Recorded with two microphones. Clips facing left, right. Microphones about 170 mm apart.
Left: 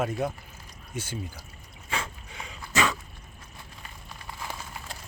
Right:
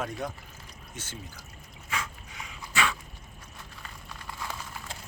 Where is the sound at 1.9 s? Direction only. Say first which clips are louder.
Left 2 dB; 30° left (ahead or behind).